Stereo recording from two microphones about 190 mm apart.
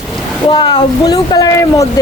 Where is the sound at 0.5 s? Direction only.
20° left (ahead or behind).